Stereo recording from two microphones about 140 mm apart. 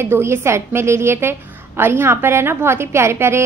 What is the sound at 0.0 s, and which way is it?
A woman's voice, 15° right (ahead or behind).